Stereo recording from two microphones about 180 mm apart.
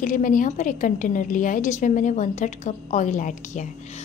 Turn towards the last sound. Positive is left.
turn(degrees=45)  # may be behind; listen again after turning